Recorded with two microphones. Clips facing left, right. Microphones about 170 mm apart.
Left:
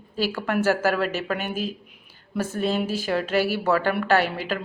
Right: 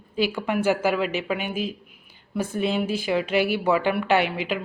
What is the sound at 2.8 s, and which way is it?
Speech, 55° right (ahead or behind).